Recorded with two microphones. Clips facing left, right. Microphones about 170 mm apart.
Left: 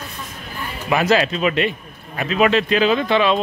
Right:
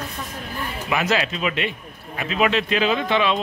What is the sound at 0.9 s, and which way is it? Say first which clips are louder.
Speech: left 6 dB; 40° left (ahead or behind).